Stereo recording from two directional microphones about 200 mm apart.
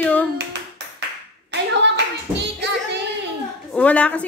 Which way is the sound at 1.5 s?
60° right (ahead or behind).